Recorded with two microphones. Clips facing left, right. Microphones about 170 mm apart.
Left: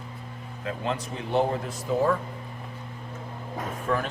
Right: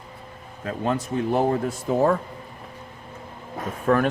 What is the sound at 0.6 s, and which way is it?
Speech, 45° right (ahead or behind).